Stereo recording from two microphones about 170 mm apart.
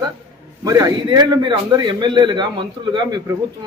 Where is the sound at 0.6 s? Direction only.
20° right (ahead or behind).